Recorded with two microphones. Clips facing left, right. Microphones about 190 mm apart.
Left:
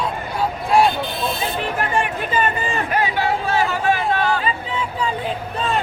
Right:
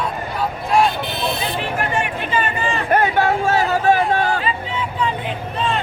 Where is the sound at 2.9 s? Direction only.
50° right (ahead or behind).